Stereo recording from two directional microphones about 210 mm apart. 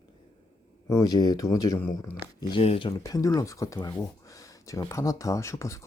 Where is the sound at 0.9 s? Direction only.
15° left (ahead or behind).